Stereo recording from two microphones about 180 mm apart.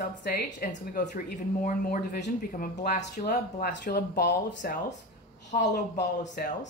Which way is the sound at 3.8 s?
60° left (ahead or behind).